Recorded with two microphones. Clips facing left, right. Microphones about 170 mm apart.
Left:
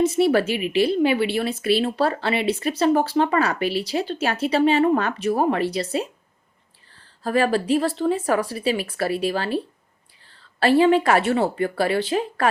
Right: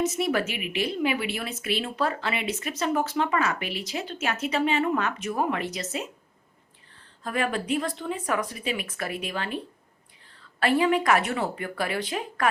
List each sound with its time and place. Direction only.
0.0 s speech: 30° left (ahead or behind)
7.2 s speech: 35° left (ahead or behind)
10.6 s speech: 30° left (ahead or behind)